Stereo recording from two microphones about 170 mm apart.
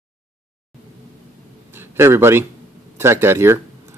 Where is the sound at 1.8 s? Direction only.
15° right (ahead or behind).